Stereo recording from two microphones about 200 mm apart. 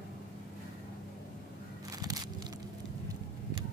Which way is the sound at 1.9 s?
20° right (ahead or behind).